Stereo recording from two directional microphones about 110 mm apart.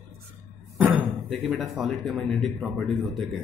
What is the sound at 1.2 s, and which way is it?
A man's voice, centre (ahead or behind).